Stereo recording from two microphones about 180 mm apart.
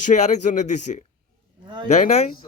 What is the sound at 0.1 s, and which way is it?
A man's voice, 40° left (ahead or behind).